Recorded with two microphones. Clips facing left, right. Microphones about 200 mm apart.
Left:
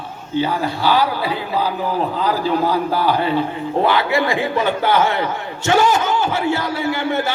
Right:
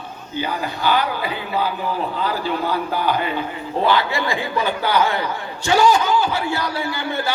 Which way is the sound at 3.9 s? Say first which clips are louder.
Even; 20° left (ahead or behind).